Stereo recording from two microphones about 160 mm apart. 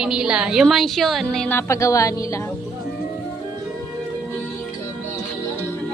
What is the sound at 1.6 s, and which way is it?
Speech, 20° left (ahead or behind).